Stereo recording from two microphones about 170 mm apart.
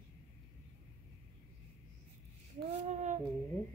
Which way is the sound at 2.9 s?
45° right (ahead or behind).